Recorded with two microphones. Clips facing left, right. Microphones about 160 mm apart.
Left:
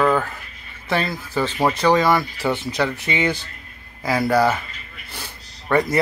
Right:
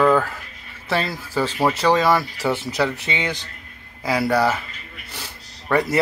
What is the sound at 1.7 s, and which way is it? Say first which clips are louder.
Speech: left 1 dB; centre (ahead or behind).